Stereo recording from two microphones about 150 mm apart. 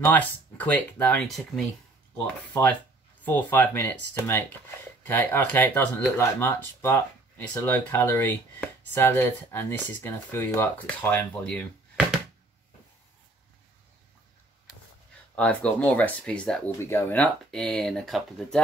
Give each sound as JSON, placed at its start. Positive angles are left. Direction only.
{"t": 0.0, "sound": "speech", "side_deg": 10}
{"t": 3.3, "sound": "speech", "side_deg": 15}
{"t": 15.3, "sound": "speech", "side_deg": 10}